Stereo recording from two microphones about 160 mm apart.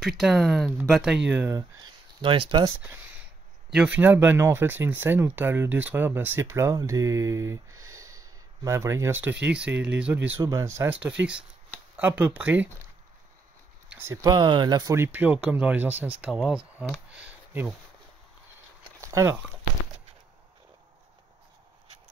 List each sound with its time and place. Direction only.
0.0 s speech: centre (ahead or behind)
1.5 s speech: 25° right (ahead or behind)
3.7 s speech: 10° right (ahead or behind)
13.9 s speech: 15° right (ahead or behind)
18.9 s a sound: 20° right (ahead or behind)